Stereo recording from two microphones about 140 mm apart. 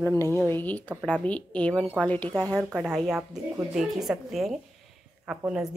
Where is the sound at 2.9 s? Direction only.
15° right (ahead or behind).